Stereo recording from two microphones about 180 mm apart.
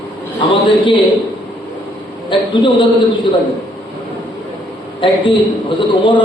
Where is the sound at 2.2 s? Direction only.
25° left (ahead or behind).